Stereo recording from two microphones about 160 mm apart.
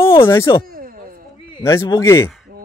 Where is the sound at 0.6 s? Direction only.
65° right (ahead or behind).